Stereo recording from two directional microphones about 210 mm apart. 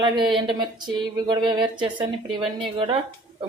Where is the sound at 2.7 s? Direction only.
25° right (ahead or behind).